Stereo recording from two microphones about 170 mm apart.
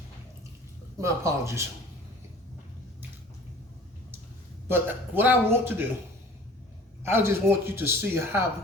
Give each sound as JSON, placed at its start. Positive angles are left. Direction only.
{"t": 0.9, "sound": "a man's voice", "side_deg": -20}
{"t": 4.7, "sound": "a man's voice", "side_deg": -10}
{"t": 7.0, "sound": "a man's voice", "side_deg": -15}